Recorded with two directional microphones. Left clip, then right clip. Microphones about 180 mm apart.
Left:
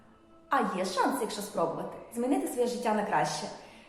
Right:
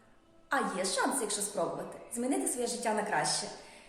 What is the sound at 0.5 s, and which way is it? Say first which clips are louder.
A woman's voice: left 3 dB; 15° right (ahead or behind).